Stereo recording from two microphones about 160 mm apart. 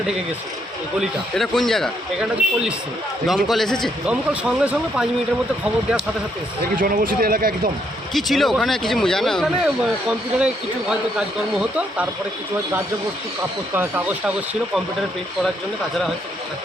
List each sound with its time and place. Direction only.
0.9 s speech: centre (ahead or behind)
3.2 s speech: centre (ahead or behind)
6.7 s speech: 60° right (ahead or behind)
8.1 s speech: centre (ahead or behind)
13.7 s speech: 10° right (ahead or behind)